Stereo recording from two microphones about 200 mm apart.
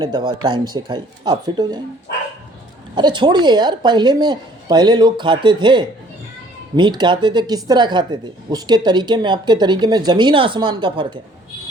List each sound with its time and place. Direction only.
0.0 s a woman's voice: 25° right (ahead or behind)
2.9 s a woman's voice: 20° right (ahead or behind)